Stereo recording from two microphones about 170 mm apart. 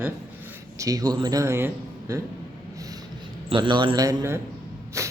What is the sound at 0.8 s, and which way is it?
A man's voice, 20° right (ahead or behind).